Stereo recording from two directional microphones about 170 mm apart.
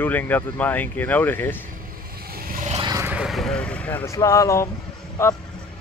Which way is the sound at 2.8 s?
20° right (ahead or behind).